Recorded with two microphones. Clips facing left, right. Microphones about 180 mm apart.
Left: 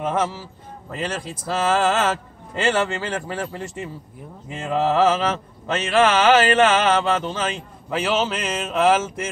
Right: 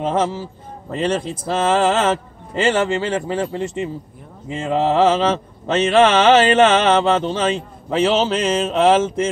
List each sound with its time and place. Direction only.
0.0 s mantra: 30° right (ahead or behind)